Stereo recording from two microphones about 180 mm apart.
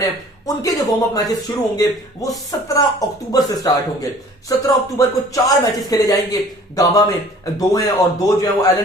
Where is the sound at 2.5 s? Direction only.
20° left (ahead or behind).